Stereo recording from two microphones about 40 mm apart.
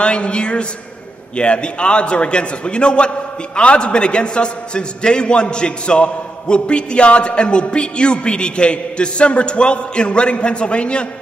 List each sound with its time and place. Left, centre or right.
0.0 s a man's voice: left